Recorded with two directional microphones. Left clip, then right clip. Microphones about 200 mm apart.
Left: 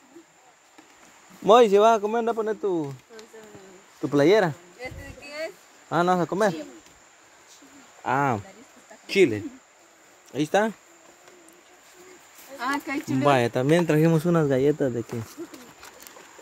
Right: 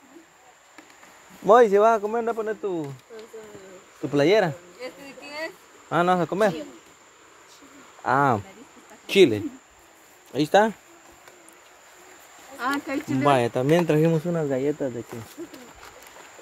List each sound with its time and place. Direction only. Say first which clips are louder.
1.8 s speech: even; 30° left (ahead or behind)
4.0 s insect: even; 20° left (ahead or behind)
5.9 s speech: right 1 dB; 10° left (ahead or behind)
8.0 s speech: right 3 dB; centre (ahead or behind)
9.0 s speech: right 3 dB; 10° right (ahead or behind)
12.5 s a sound: right 1 dB; 35° left (ahead or behind)
13.2 s speech: even; 20° left (ahead or behind)
14.0 s speech: left 1 dB; 30° left (ahead or behind)
14.3 s speech: left 3 dB; 55° left (ahead or behind)